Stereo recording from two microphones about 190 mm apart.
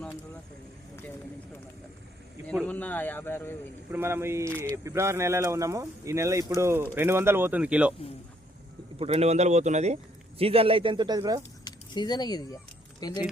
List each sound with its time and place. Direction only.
2.6 s a man's voice: 10° left (ahead or behind)
3.9 s speech: 15° right (ahead or behind)
9.0 s a man's voice: 35° right (ahead or behind)
11.6 s speech: 20° left (ahead or behind)